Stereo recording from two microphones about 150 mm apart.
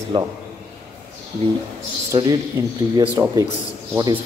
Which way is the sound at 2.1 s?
25° right (ahead or behind).